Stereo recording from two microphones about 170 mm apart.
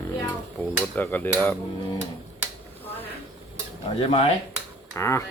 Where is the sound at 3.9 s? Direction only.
35° left (ahead or behind).